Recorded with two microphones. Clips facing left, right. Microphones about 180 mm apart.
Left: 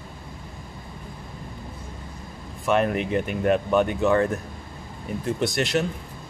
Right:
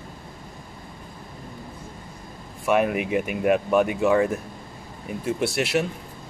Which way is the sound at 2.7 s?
5° right (ahead or behind).